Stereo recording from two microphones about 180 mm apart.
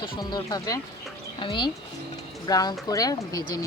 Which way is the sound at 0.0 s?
25° left (ahead or behind).